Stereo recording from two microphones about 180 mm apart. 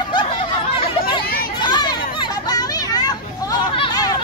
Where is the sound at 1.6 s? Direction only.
25° left (ahead or behind).